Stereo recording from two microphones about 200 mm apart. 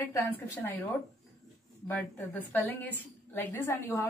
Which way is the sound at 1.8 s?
10° left (ahead or behind).